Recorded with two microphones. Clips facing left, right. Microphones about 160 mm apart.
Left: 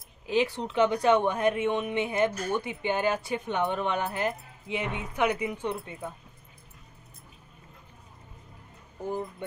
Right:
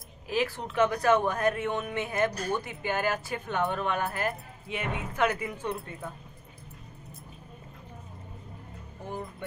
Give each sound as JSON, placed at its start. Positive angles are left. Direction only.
{"t": 0.3, "sound": "speech", "side_deg": 25}